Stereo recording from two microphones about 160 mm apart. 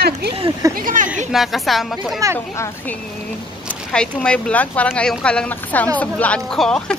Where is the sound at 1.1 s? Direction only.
Centre (ahead or behind).